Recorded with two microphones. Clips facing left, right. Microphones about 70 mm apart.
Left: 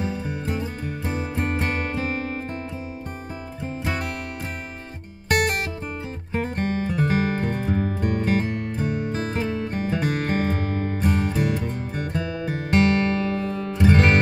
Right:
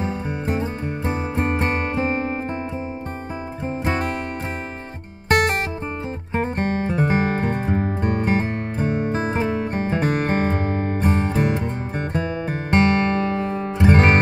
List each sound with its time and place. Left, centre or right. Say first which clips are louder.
0.0 s music: right 3 dB; right
3.8 s music: right 5 dB; right
5.3 s music: right 3 dB; right